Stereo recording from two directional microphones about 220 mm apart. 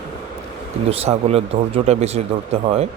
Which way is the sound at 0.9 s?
25° right (ahead or behind).